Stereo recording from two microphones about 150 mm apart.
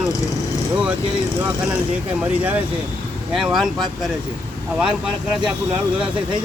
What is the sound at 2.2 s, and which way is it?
Speech, 10° right (ahead or behind).